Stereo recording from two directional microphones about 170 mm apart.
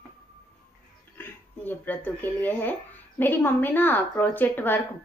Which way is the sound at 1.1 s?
10° left (ahead or behind).